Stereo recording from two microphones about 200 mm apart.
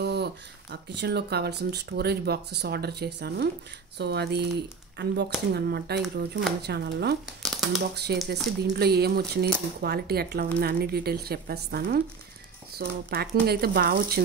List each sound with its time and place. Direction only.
0.0 s speech: 55° right (ahead or behind)
7.4 s a sound: centre (ahead or behind)
7.9 s speech: 55° right (ahead or behind)